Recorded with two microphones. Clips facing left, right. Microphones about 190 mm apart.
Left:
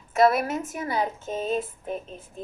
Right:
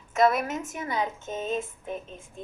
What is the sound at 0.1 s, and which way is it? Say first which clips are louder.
A woman's voice: left 3 dB; 35° left (ahead or behind).